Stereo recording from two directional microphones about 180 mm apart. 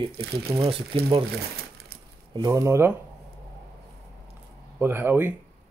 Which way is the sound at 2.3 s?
20° right (ahead or behind).